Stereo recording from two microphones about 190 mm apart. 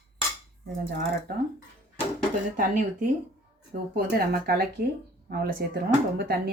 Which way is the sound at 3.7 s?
55° right (ahead or behind).